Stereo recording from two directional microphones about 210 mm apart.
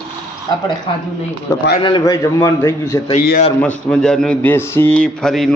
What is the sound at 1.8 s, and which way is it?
A man's voice, 20° left (ahead or behind).